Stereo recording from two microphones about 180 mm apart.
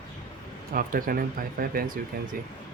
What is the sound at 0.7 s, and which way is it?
Speech, 50° right (ahead or behind).